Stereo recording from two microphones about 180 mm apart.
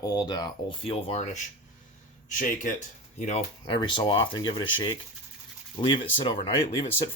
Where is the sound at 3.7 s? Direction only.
25° left (ahead or behind).